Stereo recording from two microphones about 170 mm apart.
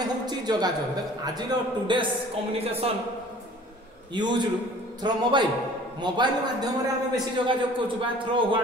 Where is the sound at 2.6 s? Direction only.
35° right (ahead or behind).